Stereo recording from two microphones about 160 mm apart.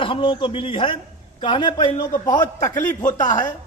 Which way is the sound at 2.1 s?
55° left (ahead or behind).